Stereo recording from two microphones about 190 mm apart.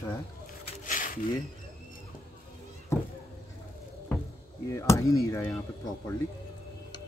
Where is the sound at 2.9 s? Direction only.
15° left (ahead or behind).